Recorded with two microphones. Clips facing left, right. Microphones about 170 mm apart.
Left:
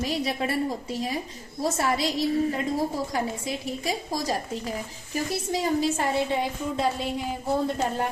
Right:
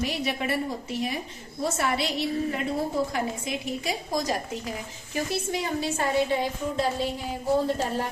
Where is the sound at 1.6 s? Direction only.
35° left (ahead or behind).